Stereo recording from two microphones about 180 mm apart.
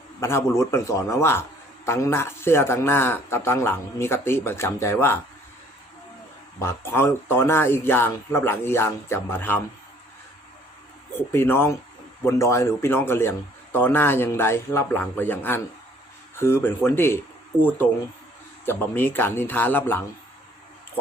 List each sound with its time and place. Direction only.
0.2 s a man's voice: 15° left (ahead or behind)
6.6 s a man's voice: 15° left (ahead or behind)
11.3 s a man's voice: 15° left (ahead or behind)